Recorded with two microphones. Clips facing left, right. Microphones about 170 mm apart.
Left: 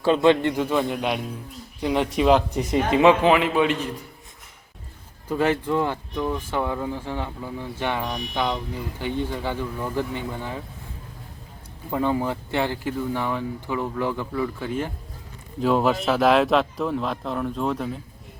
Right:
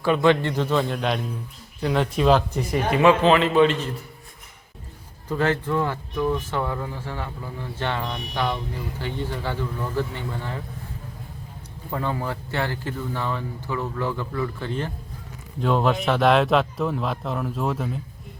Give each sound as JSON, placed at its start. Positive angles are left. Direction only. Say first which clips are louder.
{"t": 0.0, "sound": "speech", "louder": "left 1 dB", "side_deg": 20}
{"t": 5.3, "sound": "speech", "louder": "left 1 dB", "side_deg": 15}
{"t": 11.9, "sound": "speech", "louder": "left 4 dB", "side_deg": 15}